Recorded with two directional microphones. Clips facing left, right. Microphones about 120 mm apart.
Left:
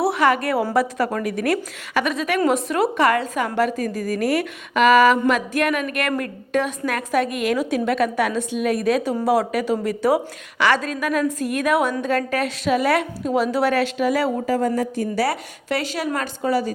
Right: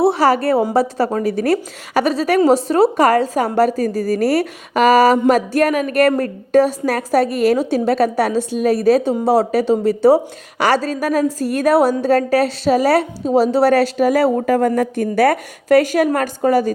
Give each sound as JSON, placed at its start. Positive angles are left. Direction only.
{"t": 0.0, "sound": "a woman's voice", "side_deg": -30}
{"t": 14.4, "sound": "a woman's voice", "side_deg": -60}